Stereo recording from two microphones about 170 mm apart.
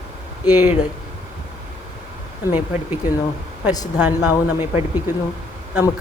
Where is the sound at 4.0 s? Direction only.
10° right (ahead or behind).